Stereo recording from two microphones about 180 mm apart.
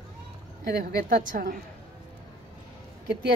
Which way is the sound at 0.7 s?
55° right (ahead or behind).